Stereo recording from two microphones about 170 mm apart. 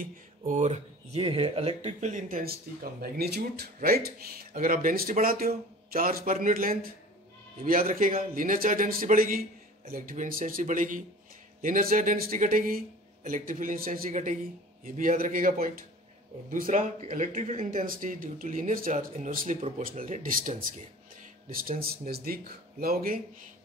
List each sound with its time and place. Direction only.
0.5 s speech: 45° right (ahead or behind)